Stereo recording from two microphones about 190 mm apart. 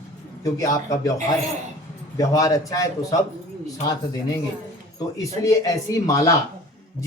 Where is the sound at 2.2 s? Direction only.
15° left (ahead or behind).